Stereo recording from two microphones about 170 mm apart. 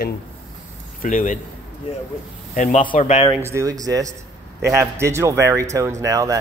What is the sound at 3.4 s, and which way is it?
Speech, 15° right (ahead or behind).